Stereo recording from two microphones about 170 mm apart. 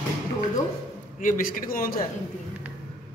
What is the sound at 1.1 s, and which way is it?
Speech, 55° left (ahead or behind).